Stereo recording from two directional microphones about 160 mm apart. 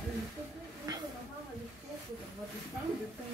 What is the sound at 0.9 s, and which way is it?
Snake, 25° right (ahead or behind).